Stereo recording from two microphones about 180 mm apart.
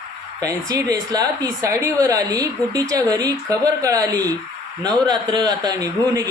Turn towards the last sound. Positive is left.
turn(degrees=-20)  # may be behind; listen again after turning